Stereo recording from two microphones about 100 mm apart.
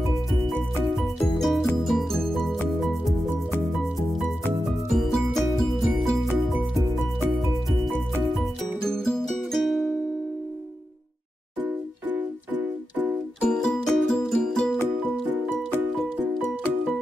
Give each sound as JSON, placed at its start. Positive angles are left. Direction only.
{"t": 0.8, "sound": "music", "side_deg": 0}
{"t": 8.2, "sound": "music", "side_deg": -5}
{"t": 11.6, "sound": "music", "side_deg": -20}
{"t": 13.4, "sound": "music", "side_deg": 10}